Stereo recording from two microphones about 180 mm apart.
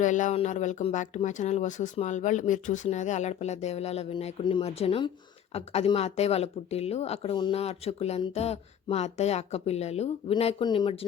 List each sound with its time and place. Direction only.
0.0 s speech: 45° left (ahead or behind); by 10.9 s 25° left (ahead or behind)